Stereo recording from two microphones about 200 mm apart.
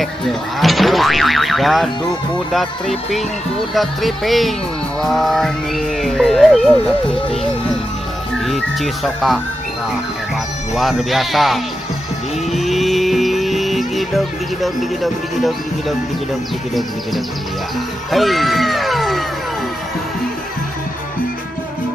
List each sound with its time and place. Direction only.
0.0 s speech: centre (ahead or behind)
8.5 s speech: centre (ahead or behind)
10.7 s speech: centre (ahead or behind)
12.5 s music: centre (ahead or behind)
15.3 s speech: centre (ahead or behind)
18.1 s speech: centre (ahead or behind)